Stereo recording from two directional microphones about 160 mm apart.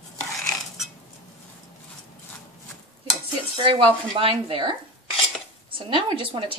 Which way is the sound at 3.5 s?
35° right (ahead or behind).